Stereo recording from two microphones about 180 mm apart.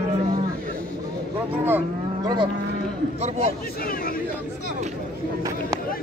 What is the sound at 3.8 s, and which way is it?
Speech, 55° left (ahead or behind).